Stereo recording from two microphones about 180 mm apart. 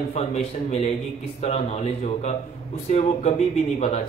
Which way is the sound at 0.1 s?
35° left (ahead or behind).